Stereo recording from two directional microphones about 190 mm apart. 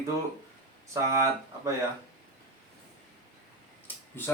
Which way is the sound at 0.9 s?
15° right (ahead or behind).